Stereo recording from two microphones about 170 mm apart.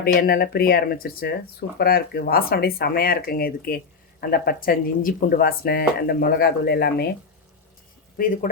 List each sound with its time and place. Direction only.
0.0 s speech: 65° left (ahead or behind)